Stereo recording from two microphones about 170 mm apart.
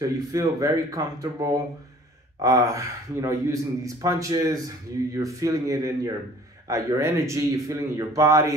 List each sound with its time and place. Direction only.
0.0 s a man's voice: 20° right (ahead or behind)